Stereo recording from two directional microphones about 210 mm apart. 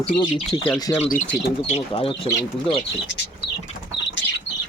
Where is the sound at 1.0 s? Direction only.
35° left (ahead or behind).